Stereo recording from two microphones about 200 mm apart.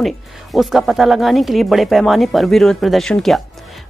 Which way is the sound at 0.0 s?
Centre (ahead or behind).